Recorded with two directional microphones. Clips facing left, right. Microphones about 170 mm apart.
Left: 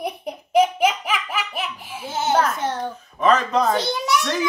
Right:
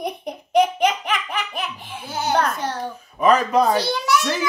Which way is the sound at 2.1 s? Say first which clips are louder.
Left 1 dB; 25° left (ahead or behind).